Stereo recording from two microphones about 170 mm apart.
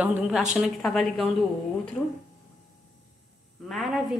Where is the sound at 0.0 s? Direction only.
5° right (ahead or behind).